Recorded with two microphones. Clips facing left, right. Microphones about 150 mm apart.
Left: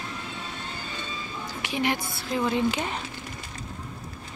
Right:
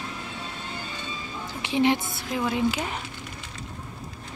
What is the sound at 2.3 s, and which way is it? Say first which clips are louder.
Speech: even; 10° right (ahead or behind).